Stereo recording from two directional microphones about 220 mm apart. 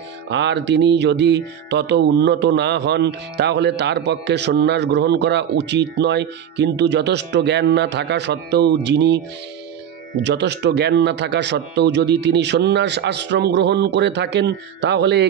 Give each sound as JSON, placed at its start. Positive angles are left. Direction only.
{"t": 0.3, "sound": "music", "side_deg": -50}
{"t": 10.2, "sound": "music", "side_deg": -50}